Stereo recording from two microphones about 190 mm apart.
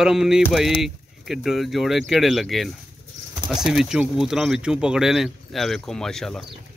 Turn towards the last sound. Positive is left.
turn(degrees=5)  # may be behind; listen again after turning